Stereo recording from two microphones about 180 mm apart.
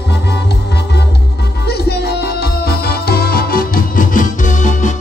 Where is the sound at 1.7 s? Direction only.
65° left (ahead or behind).